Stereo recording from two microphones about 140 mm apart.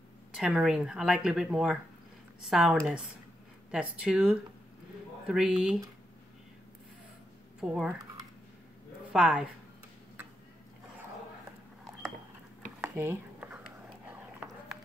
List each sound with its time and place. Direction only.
0.4 s speech: 5° right (ahead or behind)
7.6 s speech: 5° right (ahead or behind)
9.1 s speech: 5° right (ahead or behind)
12.8 s a sound: 20° right (ahead or behind)